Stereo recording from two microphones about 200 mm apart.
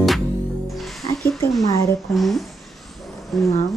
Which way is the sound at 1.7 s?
15° left (ahead or behind).